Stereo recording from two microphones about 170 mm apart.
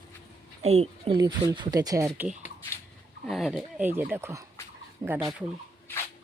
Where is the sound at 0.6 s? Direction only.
35° right (ahead or behind); by 2.3 s 20° right (ahead or behind).